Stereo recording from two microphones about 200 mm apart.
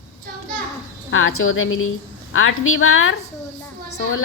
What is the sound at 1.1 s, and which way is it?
A woman's voice, 90° left.